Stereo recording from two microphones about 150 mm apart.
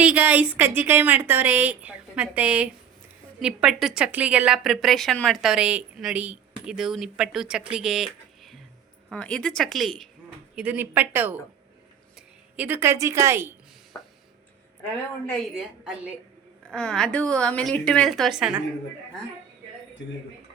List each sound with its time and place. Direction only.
0.0 s a woman's voice: 10° right (ahead or behind)
10.5 s a woman's voice: 10° right (ahead or behind)
12.5 s a woman's voice: 10° right (ahead or behind)
15.5 s a woman's voice: 5° right (ahead or behind)
16.6 s a woman's voice: 5° left (ahead or behind)